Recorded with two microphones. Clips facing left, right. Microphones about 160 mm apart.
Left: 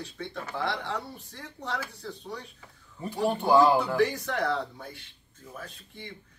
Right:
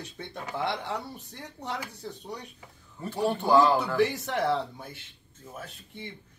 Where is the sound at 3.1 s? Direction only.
15° left (ahead or behind).